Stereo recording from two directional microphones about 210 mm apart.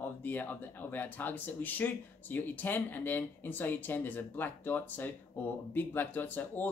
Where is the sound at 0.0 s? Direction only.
10° left (ahead or behind).